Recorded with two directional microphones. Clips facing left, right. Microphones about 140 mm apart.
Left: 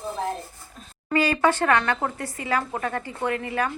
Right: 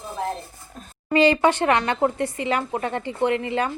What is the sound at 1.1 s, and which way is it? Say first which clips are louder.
A woman's voice: right 4 dB; 20° right (ahead or behind).